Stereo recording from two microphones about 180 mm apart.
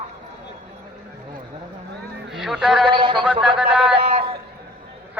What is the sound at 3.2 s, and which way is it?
Speech, 5° right (ahead or behind).